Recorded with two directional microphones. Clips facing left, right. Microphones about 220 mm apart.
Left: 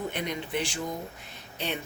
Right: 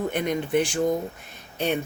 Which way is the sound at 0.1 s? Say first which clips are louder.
Right 8 dB; 50° right (ahead or behind).